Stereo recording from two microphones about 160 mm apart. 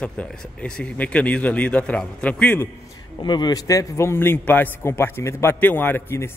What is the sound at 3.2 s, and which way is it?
A man's voice, 30° left (ahead or behind).